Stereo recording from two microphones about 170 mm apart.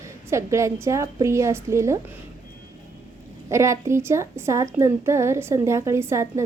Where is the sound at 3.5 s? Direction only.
15° right (ahead or behind).